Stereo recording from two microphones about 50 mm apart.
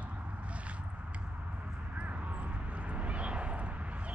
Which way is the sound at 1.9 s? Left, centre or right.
Right.